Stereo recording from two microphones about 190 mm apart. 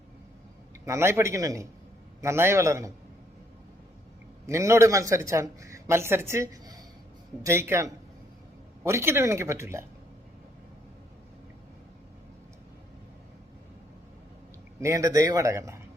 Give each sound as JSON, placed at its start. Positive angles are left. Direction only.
{"t": 0.9, "sound": "speech", "side_deg": -15}
{"t": 4.4, "sound": "speech", "side_deg": -15}
{"t": 14.8, "sound": "speech", "side_deg": -15}